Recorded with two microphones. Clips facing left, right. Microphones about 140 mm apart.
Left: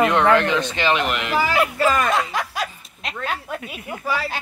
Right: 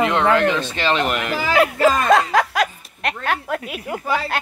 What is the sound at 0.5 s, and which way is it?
Speech, 20° left (ahead or behind).